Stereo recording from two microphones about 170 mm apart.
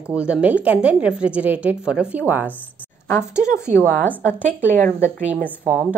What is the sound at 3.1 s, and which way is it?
Speech, 15° left (ahead or behind).